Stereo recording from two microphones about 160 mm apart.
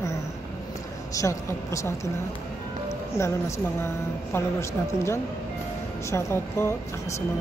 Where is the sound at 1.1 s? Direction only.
20° left (ahead or behind).